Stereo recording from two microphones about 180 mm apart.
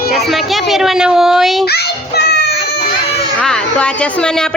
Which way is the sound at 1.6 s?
60° left (ahead or behind).